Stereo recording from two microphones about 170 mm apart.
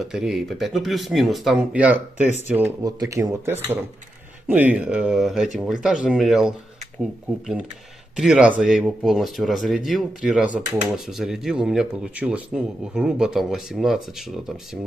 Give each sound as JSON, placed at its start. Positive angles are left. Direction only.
{"t": 0.0, "sound": "speech", "side_deg": 0}
{"t": 2.2, "sound": "speech", "side_deg": 40}
{"t": 2.8, "sound": "speech", "side_deg": -20}